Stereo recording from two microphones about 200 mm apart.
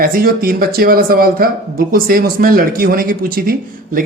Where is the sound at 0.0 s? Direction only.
45° right (ahead or behind).